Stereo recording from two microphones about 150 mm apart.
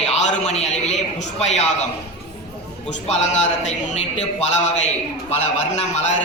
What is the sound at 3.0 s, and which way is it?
A man's voice, 50° left (ahead or behind).